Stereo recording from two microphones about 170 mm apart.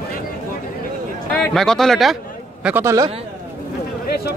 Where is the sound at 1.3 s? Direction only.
5° left (ahead or behind).